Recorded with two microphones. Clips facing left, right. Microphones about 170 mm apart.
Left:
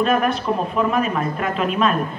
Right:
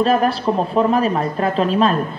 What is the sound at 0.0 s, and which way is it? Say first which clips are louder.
A woman's voice: right 3 dB; 35° right (ahead or behind).